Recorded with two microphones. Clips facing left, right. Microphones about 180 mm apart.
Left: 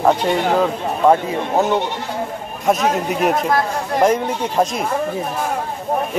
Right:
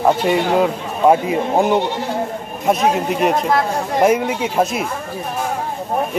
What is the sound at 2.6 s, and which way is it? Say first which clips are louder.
Speech: right 1 dB; centre (ahead or behind).